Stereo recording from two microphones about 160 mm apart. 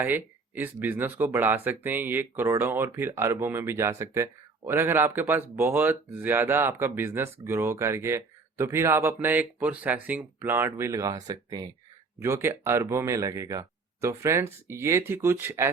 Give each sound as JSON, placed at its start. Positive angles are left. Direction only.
{"t": 0.0, "sound": "speech", "side_deg": -10}